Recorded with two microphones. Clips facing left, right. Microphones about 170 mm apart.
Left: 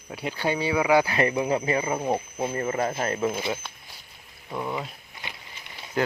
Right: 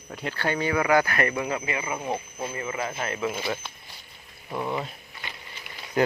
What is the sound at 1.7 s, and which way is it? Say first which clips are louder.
Speech: left 5 dB; 35° left (ahead or behind).